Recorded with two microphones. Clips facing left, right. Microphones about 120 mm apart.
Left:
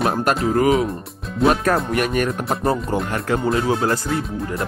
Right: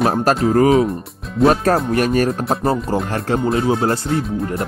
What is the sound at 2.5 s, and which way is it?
Speech, centre (ahead or behind).